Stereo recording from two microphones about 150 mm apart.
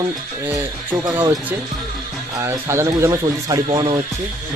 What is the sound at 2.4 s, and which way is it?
Speech, 15° right (ahead or behind).